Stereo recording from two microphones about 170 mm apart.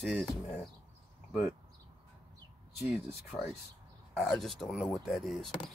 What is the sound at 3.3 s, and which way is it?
Speech, 10° left (ahead or behind).